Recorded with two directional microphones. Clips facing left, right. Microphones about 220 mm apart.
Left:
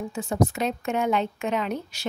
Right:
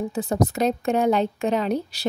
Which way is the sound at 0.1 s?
35° right (ahead or behind).